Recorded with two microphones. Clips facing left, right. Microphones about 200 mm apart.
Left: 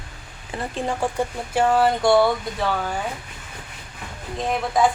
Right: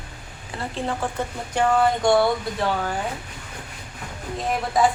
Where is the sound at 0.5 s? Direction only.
20° left (ahead or behind).